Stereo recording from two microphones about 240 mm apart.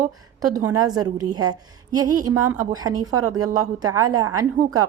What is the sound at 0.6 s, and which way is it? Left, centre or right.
Speech, right.